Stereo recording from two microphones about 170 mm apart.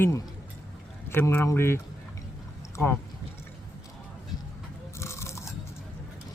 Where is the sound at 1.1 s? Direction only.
15° left (ahead or behind).